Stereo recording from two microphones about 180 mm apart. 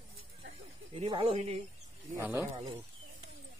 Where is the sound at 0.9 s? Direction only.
35° right (ahead or behind).